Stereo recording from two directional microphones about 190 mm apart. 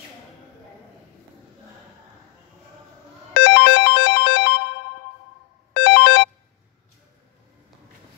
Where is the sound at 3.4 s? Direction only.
55° left (ahead or behind).